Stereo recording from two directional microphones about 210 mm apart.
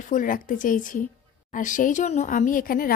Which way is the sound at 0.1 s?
40° left (ahead or behind).